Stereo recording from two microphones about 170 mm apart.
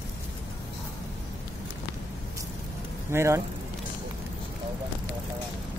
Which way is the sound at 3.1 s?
15° right (ahead or behind).